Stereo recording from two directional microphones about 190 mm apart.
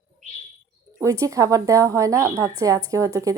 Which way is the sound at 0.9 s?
15° right (ahead or behind).